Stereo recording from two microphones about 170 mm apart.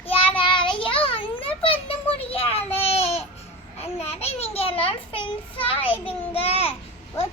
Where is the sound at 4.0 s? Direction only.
40° left (ahead or behind).